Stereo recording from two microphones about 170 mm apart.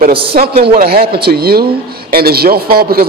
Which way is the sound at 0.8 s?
65° right (ahead or behind).